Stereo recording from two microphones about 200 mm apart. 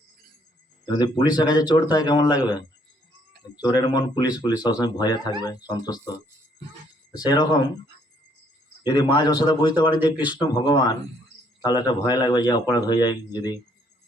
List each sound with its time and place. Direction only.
0.9 s speech: 20° left (ahead or behind)
3.6 s speech: 20° left (ahead or behind)
7.3 s speech: 20° left (ahead or behind)
8.8 s a man's voice: 20° left (ahead or behind)
10.2 s speech: 5° right (ahead or behind)
10.4 s speech: 20° left (ahead or behind)